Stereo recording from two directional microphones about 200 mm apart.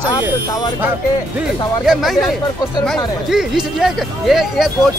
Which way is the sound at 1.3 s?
Centre (ahead or behind).